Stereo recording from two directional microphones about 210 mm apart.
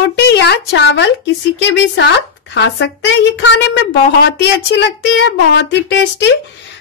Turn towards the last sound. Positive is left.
turn(degrees=60)  # may be behind; listen again after turning